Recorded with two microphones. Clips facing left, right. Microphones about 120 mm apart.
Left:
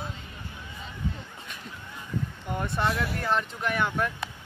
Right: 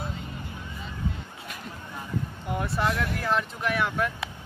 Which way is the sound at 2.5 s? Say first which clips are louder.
Right 1 dB; centre (ahead or behind).